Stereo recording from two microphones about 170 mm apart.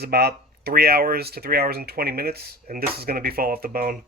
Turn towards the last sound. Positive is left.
turn(degrees=-55)  # may be behind; listen again after turning